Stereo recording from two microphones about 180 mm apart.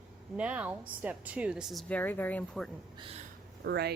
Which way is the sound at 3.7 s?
65° right (ahead or behind).